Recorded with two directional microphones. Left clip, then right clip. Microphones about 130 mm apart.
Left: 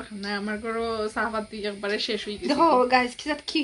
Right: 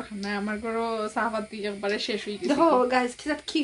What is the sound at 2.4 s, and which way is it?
Speech, 10° left (ahead or behind).